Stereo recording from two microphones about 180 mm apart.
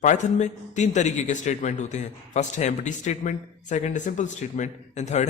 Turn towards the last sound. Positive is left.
turn(degrees=40)  # may be behind; listen again after turning